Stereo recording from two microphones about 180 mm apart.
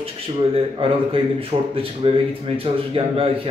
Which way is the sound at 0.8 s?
30° right (ahead or behind).